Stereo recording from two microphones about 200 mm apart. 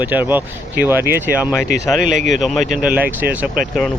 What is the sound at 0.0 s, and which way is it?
Speech, 10° right (ahead or behind).